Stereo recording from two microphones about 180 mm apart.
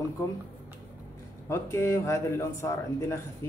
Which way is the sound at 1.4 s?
15° left (ahead or behind).